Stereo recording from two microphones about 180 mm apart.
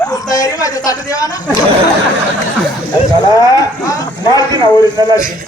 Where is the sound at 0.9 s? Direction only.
20° left (ahead or behind).